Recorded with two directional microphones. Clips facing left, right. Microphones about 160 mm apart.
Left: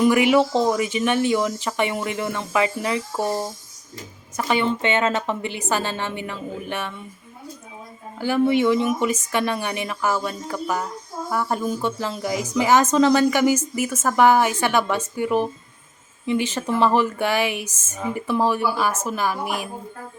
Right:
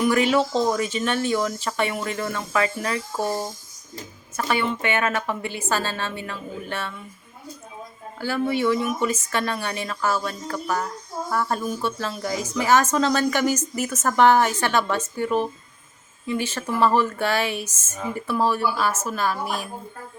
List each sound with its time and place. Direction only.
0.0 s a woman's voice: 15° left (ahead or behind)
8.2 s speech: 15° left (ahead or behind)